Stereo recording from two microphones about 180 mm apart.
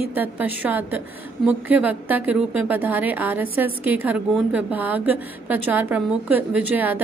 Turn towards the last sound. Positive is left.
turn(degrees=-10)  # may be behind; listen again after turning